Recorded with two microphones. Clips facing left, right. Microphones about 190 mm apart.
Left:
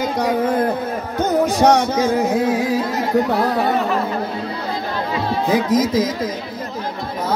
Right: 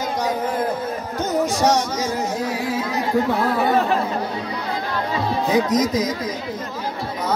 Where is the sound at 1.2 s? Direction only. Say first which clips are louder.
Left 4 dB; 60° left (ahead or behind).